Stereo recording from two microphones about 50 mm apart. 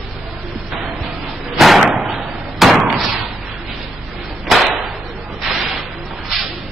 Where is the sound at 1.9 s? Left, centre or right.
Centre.